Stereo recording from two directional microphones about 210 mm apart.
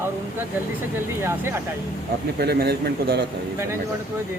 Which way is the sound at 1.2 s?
10° right (ahead or behind).